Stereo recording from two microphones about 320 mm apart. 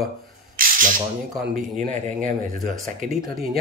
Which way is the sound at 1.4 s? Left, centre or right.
Right.